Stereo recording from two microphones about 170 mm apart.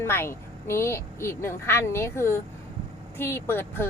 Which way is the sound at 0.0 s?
15° left (ahead or behind).